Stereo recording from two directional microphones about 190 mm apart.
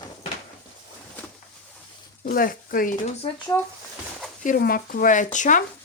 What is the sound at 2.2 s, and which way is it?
Speech, 50° left (ahead or behind).